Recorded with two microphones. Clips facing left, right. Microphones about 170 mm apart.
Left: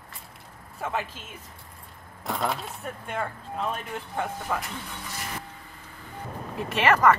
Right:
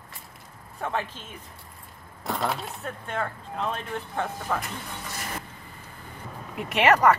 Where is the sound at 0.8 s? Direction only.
5° left (ahead or behind).